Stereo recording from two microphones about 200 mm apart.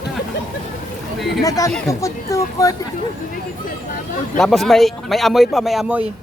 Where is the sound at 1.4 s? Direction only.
15° left (ahead or behind).